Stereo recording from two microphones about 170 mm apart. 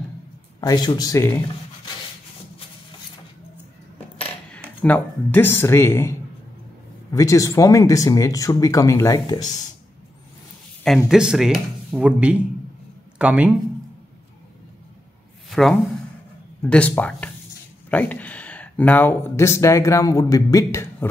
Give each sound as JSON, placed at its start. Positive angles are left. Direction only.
{"t": 0.6, "sound": "speech", "side_deg": 25}
{"t": 4.5, "sound": "speech", "side_deg": 10}
{"t": 11.1, "sound": "a man's voice", "side_deg": -5}
{"t": 15.5, "sound": "speech", "side_deg": 0}